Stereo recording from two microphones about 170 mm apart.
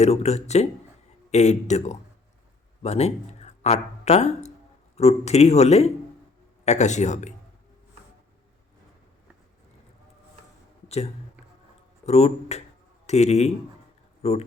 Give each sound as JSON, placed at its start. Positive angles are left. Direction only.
{"t": 0.0, "sound": "a man's voice", "side_deg": 40}
{"t": 10.8, "sound": "a sound", "side_deg": 35}
{"t": 12.0, "sound": "a man's voice", "side_deg": 40}